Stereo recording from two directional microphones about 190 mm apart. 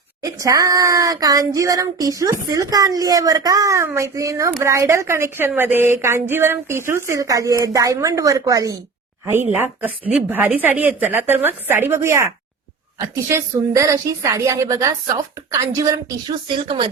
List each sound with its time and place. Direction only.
0.2 s speech: 20° right (ahead or behind)